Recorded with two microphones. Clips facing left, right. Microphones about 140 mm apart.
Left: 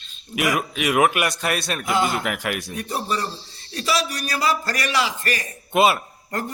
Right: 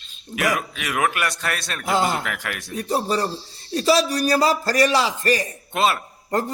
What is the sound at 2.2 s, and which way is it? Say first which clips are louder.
Speech: left 4 dB; 15° left (ahead or behind).